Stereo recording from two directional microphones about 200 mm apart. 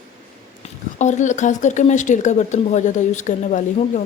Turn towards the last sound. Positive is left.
turn(degrees=40)  # may be behind; listen again after turning